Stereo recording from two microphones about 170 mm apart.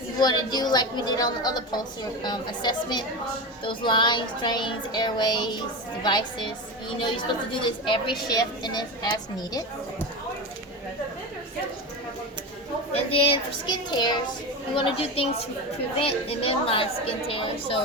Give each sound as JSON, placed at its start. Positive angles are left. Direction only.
{"t": 0.2, "sound": "a woman's voice", "side_deg": 25}
{"t": 7.6, "sound": "a woman's voice", "side_deg": 30}
{"t": 12.9, "sound": "a woman's voice", "side_deg": 35}